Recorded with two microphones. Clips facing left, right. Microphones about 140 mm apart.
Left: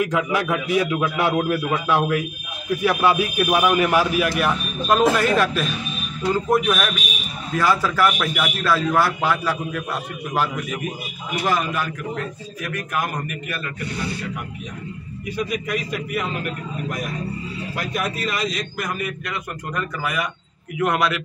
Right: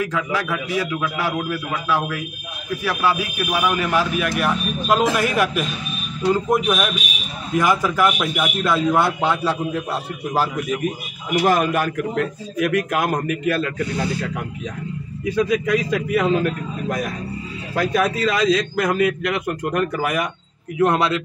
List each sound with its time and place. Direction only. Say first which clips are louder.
0.0 s a man's voice: left 2 dB; 15° left (ahead or behind)
4.4 s a man's voice: right 1 dB; 5° right (ahead or behind); by 9.8 s 25° right (ahead or behind)
11.4 s a man's voice: right 4 dB; 50° right (ahead or behind)
12.5 s a man's voice: right 7 dB; 75° right (ahead or behind); by 13.7 s 90° right
15.6 s a man's voice: right 6 dB; 90° right
18.3 s a man's voice: right 8 dB; 90° right; by 20.2 s 50° right (ahead or behind)
20.8 s a man's voice: right 3 dB; 30° right (ahead or behind)